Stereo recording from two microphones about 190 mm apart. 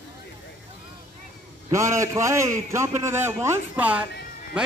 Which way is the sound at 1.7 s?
15° right (ahead or behind).